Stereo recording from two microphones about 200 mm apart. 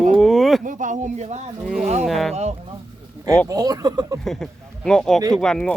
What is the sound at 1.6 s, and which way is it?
Speech, 5° right (ahead or behind).